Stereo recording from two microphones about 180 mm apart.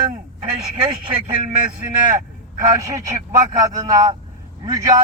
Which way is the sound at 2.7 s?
20° right (ahead or behind).